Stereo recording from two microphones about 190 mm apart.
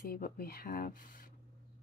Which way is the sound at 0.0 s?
50° left (ahead or behind).